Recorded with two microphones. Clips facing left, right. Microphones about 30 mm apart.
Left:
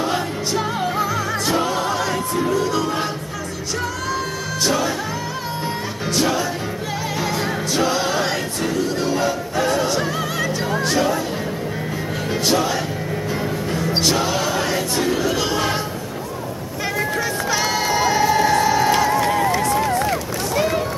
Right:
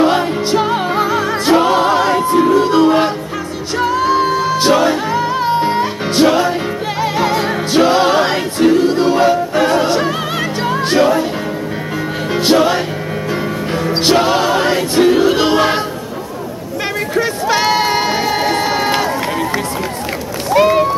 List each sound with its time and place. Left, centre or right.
0.0 s music: right
12.4 s music: right
14.0 s music: right
17.1 s crowd: right
19.0 s run: right
20.5 s vehicle: right